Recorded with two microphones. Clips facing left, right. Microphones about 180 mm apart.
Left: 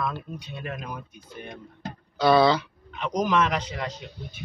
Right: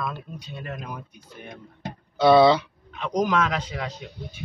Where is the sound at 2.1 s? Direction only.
25° right (ahead or behind).